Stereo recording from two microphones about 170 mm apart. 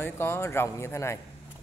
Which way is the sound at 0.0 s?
15° left (ahead or behind).